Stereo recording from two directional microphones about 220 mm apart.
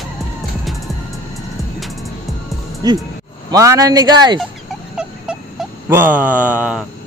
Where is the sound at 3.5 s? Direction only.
15° right (ahead or behind).